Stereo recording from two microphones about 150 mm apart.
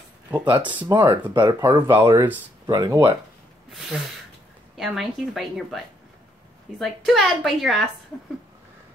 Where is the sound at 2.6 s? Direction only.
25° right (ahead or behind).